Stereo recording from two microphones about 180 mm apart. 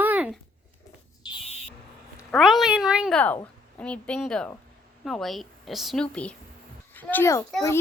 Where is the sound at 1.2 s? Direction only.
30° left (ahead or behind).